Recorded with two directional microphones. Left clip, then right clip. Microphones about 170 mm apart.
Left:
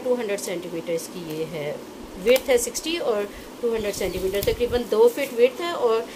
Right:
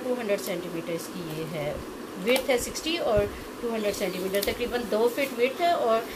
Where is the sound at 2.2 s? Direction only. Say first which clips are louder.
Left 6 dB; 60° left (ahead or behind).